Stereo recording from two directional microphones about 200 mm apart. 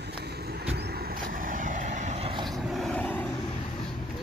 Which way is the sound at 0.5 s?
55° right (ahead or behind).